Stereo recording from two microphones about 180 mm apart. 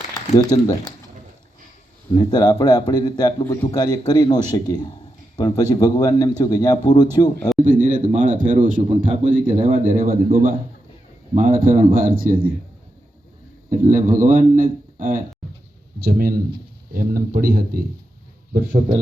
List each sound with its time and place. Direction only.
0.3 s speech: 20° left (ahead or behind)
2.1 s speech: 20° left (ahead or behind)
7.6 s a man's voice: 45° right (ahead or behind)
13.7 s a man's voice: 50° right (ahead or behind)